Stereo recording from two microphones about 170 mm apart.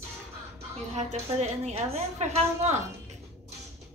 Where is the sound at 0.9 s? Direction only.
40° right (ahead or behind).